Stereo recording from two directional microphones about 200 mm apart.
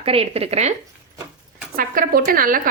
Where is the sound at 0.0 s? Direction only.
30° right (ahead or behind).